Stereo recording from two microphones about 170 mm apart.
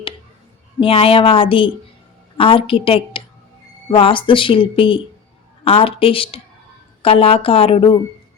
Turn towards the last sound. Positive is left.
turn(degrees=30)  # may be behind; listen again after turning